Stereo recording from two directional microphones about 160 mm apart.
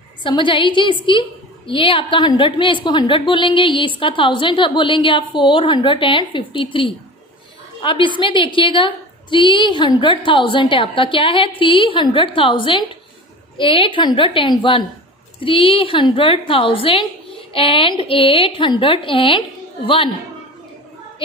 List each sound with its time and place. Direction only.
0.2 s a woman's voice: 30° left (ahead or behind)